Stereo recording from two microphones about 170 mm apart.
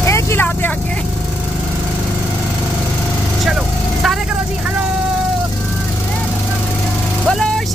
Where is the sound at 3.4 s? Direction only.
Centre (ahead or behind).